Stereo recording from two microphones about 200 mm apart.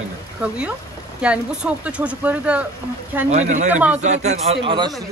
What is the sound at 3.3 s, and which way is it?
A man's voice, 35° right (ahead or behind).